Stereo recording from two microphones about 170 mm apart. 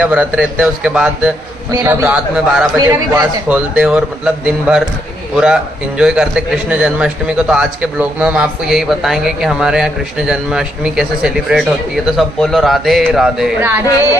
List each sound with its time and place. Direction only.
0.0 s a man's voice: 10° right (ahead or behind)
2.9 s a man's voice: 20° right (ahead or behind)
3.4 s a man's voice: 10° right (ahead or behind)